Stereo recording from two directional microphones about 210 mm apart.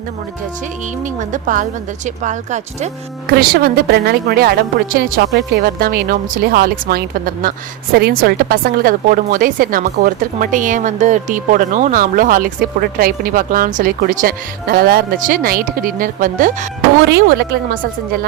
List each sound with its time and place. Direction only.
1.3 s speech: 40° right (ahead or behind)